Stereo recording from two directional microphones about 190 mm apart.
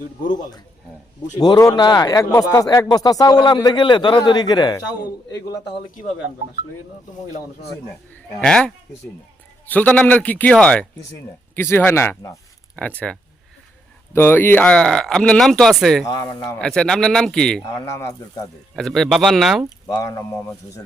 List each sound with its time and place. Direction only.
1.4 s speech: 20° left (ahead or behind)
8.1 s a man's voice: 5° left (ahead or behind)
16.0 s speech: 20° left (ahead or behind)
16.6 s speech: 5° left (ahead or behind)
17.8 s a man's voice: 15° left (ahead or behind)
18.8 s speech: centre (ahead or behind)
19.9 s a man's voice: 20° left (ahead or behind)